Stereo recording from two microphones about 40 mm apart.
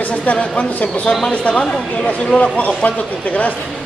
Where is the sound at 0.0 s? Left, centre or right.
Left.